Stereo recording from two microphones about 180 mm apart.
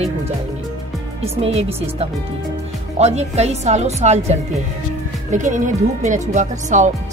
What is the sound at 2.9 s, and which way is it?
Speech, 40° right (ahead or behind).